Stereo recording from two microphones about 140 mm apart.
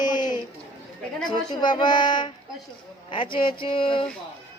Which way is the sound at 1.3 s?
35° left (ahead or behind).